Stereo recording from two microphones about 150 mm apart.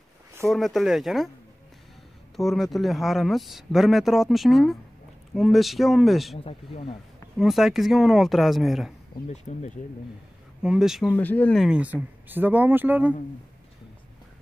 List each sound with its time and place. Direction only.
0.5 s speech: centre (ahead or behind)
2.3 s speech: centre (ahead or behind)
6.3 s speech: 40° left (ahead or behind)
7.3 s speech: centre (ahead or behind)
9.3 s speech: 50° left (ahead or behind)
10.6 s speech: 5° right (ahead or behind)
11.1 s speech: 10° left (ahead or behind)
11.6 s speech: 10° right (ahead or behind)